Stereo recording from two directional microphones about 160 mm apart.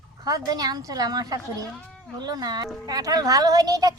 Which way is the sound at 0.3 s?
25° right (ahead or behind).